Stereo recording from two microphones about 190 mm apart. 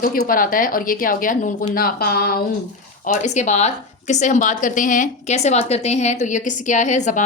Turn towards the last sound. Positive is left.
turn(degrees=40)  # may be behind; listen again after turning